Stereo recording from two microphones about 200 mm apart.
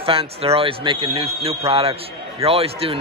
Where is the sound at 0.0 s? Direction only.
30° right (ahead or behind).